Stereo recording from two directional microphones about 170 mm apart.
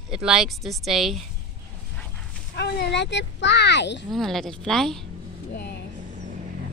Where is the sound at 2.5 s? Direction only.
80° left.